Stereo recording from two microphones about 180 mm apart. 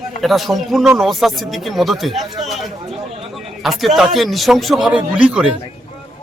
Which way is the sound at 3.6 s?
Centre (ahead or behind).